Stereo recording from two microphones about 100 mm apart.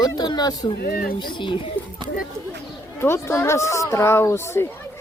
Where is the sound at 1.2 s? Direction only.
55° left (ahead or behind).